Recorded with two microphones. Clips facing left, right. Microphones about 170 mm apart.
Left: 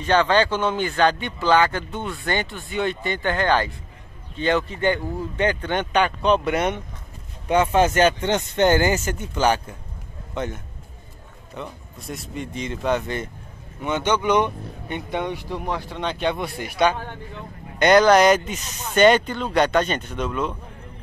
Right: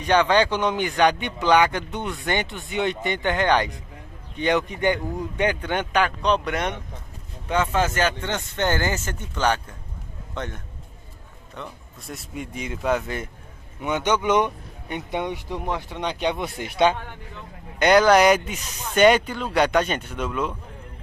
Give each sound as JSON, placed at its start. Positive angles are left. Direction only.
{"t": 0.0, "sound": "speech", "side_deg": -15}
{"t": 7.4, "sound": "speech", "side_deg": 15}
{"t": 12.4, "sound": "speech", "side_deg": -10}
{"t": 17.7, "sound": "speech", "side_deg": -5}